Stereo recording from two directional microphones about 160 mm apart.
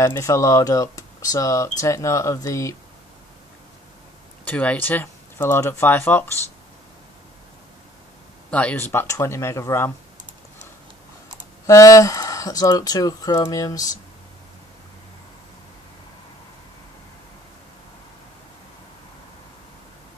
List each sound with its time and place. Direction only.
0.0 s speech: 20° left (ahead or behind)
4.5 s speech: 10° left (ahead or behind)
8.5 s speech: 5° left (ahead or behind)
11.6 s speech: 20° left (ahead or behind)